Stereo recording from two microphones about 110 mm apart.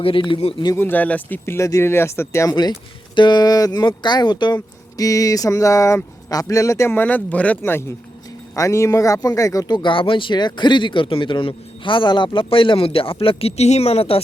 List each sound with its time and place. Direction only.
0.0 s a man's voice: 50° left (ahead or behind)
0.8 s speech: 15° left (ahead or behind)
3.2 s speech: 40° left (ahead or behind); by 14.2 s 65° left (ahead or behind)